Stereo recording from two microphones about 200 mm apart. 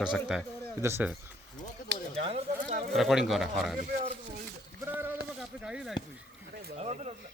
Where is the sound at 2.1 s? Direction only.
30° right (ahead or behind).